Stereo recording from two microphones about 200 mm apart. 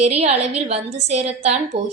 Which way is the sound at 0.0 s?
30° right (ahead or behind).